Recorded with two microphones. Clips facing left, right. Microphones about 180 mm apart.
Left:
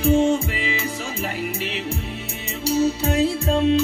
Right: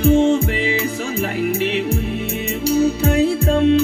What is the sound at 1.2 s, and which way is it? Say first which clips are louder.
Music: right 9 dB; 60° right (ahead or behind).